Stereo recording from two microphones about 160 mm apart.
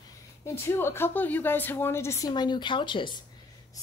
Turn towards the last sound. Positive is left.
turn(degrees=30)  # may be behind; listen again after turning